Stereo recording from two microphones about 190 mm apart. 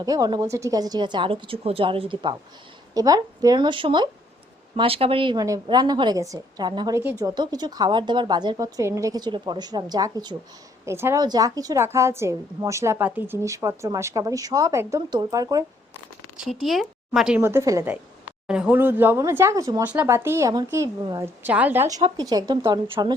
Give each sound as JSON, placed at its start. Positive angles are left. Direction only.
{"t": 0.0, "sound": "a woman's voice", "side_deg": -20}
{"t": 16.4, "sound": "a woman's voice", "side_deg": 0}